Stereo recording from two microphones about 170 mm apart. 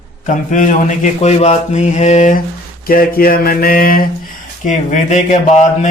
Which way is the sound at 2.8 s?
55° left (ahead or behind).